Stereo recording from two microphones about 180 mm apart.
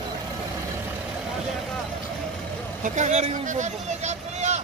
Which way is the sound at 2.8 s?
40° right (ahead or behind).